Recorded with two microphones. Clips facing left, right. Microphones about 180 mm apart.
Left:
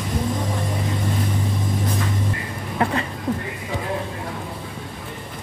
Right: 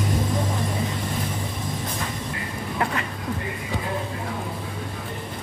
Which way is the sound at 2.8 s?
30° left (ahead or behind).